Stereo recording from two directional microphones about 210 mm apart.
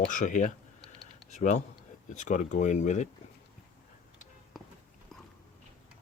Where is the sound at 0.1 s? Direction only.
35° left (ahead or behind).